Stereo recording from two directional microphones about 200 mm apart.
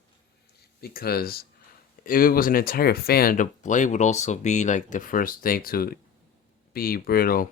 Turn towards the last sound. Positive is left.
turn(degrees=45)  # may be behind; listen again after turning